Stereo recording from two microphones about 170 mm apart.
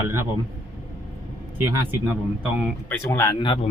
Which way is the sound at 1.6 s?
15° right (ahead or behind).